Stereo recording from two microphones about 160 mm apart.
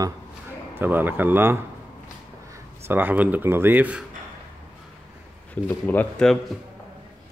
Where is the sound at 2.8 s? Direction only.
10° right (ahead or behind).